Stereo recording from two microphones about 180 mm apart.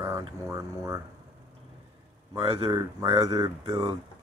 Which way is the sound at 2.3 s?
30° right (ahead or behind).